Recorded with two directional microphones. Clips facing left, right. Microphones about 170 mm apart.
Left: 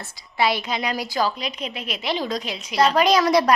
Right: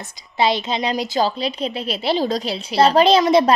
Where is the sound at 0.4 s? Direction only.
25° right (ahead or behind).